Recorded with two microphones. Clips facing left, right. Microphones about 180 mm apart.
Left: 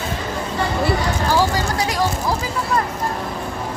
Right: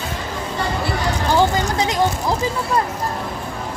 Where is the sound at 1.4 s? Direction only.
20° right (ahead or behind).